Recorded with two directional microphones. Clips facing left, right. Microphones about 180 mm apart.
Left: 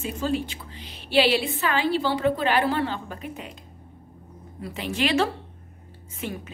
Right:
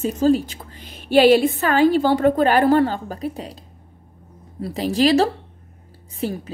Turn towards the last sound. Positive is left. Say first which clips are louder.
# right 7 dB
turn(degrees=-35)  # may be behind; listen again after turning